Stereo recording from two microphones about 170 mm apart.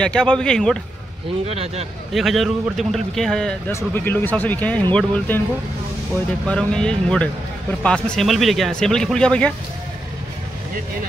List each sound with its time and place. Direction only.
0.0 s speech: 5° left (ahead or behind)
1.5 s speech: 35° right (ahead or behind)
2.1 s speech: centre (ahead or behind)
6.4 s speech: 5° left (ahead or behind)